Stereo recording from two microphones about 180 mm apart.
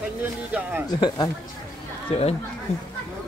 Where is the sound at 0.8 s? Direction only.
20° left (ahead or behind).